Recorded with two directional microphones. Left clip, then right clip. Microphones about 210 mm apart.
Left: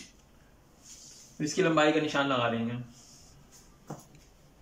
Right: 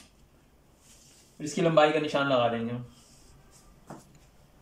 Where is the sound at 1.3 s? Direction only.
10° right (ahead or behind).